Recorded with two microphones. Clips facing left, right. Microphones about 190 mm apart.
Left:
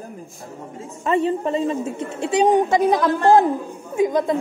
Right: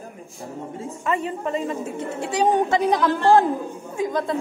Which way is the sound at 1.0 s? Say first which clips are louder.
Left 6 dB; 30° left (ahead or behind).